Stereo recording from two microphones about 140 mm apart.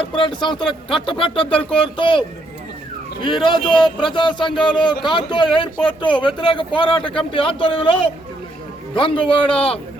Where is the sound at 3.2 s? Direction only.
35° left (ahead or behind).